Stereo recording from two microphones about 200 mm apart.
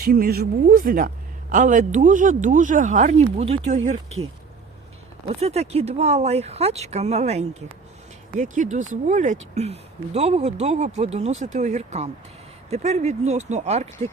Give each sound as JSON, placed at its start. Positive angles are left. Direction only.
{"t": 0.0, "sound": "speech", "side_deg": -45}
{"t": 5.3, "sound": "speech", "side_deg": -30}